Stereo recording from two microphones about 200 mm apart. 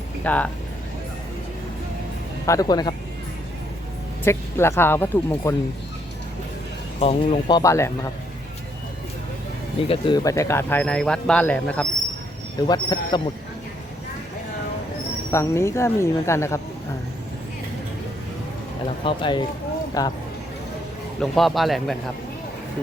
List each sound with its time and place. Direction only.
0.3 s speech: 5° left (ahead or behind)
2.5 s speech: 20° left (ahead or behind)
4.2 s speech: 10° left (ahead or behind)
7.0 s speech: 30° left (ahead or behind); by 7.9 s 15° left (ahead or behind)
9.9 s speech: 20° left (ahead or behind); by 11.9 s 5° left (ahead or behind)
12.5 s speech: 20° left (ahead or behind)
15.3 s speech: 15° left (ahead or behind)
19.0 s speech: 25° left (ahead or behind)
21.2 s a man's voice: centre (ahead or behind)